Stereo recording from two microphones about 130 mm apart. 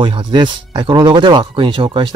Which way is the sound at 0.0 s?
35° right (ahead or behind).